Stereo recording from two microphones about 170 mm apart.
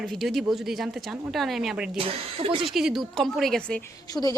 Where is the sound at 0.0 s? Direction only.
Centre (ahead or behind).